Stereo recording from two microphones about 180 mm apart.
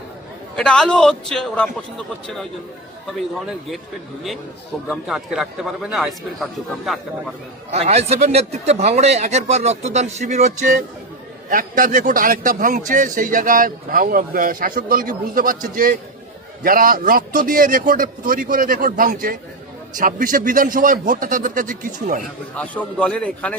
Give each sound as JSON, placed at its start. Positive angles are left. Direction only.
{"t": 0.5, "sound": "a man's voice", "side_deg": 5}
{"t": 3.1, "sound": "a man's voice", "side_deg": 0}
{"t": 4.9, "sound": "a man's voice", "side_deg": 0}
{"t": 7.7, "sound": "a man's voice", "side_deg": -35}
{"t": 22.5, "sound": "a man's voice", "side_deg": 10}